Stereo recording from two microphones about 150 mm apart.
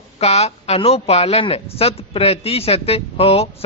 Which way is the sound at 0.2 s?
45° left (ahead or behind).